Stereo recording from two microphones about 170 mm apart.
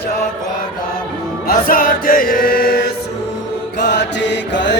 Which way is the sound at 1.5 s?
55° left (ahead or behind).